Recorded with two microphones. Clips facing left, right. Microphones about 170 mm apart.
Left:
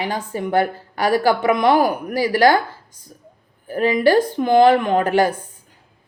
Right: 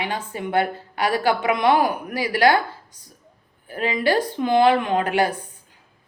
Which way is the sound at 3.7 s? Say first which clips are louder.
Left 6 dB; 45° left (ahead or behind).